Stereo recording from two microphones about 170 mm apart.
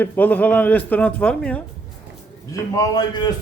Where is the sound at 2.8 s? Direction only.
25° left (ahead or behind).